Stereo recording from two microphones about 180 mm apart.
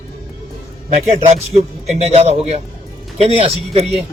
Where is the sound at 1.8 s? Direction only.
35° right (ahead or behind).